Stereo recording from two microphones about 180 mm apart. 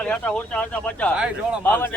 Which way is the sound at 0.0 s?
5° left (ahead or behind).